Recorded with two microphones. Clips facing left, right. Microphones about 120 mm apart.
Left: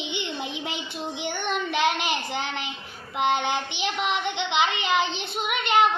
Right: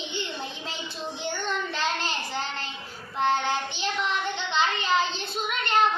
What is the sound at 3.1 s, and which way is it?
Child singing, 15° left (ahead or behind).